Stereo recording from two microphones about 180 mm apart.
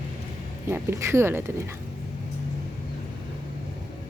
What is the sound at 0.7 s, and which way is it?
Speech, 15° right (ahead or behind).